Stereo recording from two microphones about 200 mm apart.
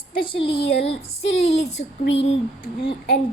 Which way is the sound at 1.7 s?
60° left (ahead or behind).